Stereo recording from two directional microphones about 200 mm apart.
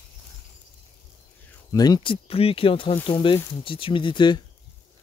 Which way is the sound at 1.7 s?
20° left (ahead or behind).